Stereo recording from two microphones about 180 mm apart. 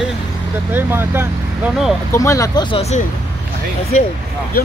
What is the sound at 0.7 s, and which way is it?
Speech, 10° right (ahead or behind).